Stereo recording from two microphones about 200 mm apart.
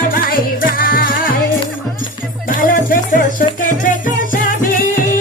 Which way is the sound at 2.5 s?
45° left (ahead or behind).